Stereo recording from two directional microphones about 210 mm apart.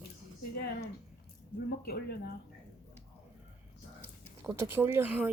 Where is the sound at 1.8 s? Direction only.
50° left (ahead or behind).